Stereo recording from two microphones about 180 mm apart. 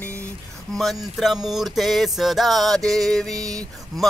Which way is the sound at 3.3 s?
20° right (ahead or behind).